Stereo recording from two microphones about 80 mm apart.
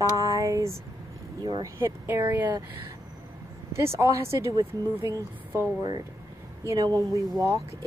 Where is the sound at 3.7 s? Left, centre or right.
Right.